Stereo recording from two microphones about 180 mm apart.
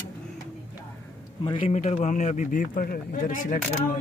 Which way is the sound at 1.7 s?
40° left (ahead or behind).